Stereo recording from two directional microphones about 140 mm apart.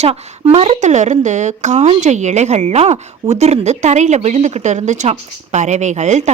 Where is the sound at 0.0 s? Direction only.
45° right (ahead or behind).